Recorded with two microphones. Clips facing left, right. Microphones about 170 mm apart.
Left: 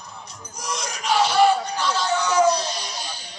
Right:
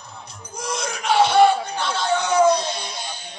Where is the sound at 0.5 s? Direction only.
55° right (ahead or behind).